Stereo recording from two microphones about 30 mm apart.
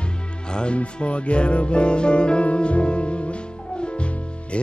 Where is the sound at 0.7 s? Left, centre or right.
Left.